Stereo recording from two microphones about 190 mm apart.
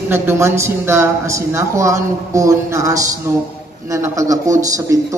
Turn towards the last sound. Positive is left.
turn(degrees=-15)  # may be behind; listen again after turning